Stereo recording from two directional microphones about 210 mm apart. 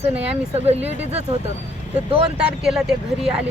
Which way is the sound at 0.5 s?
30° right (ahead or behind).